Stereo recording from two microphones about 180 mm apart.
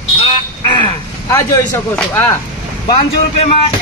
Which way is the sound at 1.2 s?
15° left (ahead or behind).